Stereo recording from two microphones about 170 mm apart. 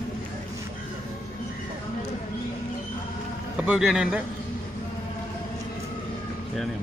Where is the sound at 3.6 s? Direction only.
5° right (ahead or behind).